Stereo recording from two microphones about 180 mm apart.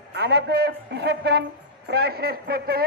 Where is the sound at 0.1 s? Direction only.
70° right (ahead or behind).